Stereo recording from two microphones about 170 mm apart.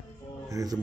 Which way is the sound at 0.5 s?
20° right (ahead or behind).